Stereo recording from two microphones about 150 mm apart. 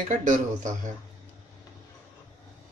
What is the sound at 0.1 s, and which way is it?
Speech, 55° right (ahead or behind).